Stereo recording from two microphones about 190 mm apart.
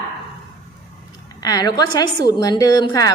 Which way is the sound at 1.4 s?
20° left (ahead or behind).